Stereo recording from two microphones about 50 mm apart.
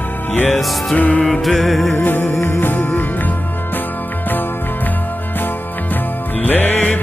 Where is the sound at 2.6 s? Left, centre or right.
Left.